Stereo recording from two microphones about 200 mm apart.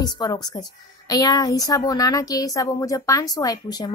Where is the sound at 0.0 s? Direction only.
20° left (ahead or behind).